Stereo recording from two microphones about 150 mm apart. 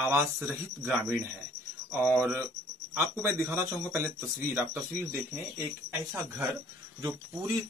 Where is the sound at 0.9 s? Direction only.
5° right (ahead or behind).